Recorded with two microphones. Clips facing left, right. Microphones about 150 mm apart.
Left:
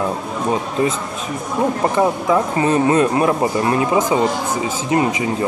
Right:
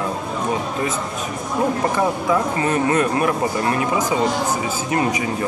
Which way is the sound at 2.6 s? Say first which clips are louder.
Left 4 dB; 25° left (ahead or behind).